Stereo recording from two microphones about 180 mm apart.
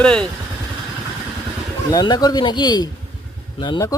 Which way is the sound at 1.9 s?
25° left (ahead or behind).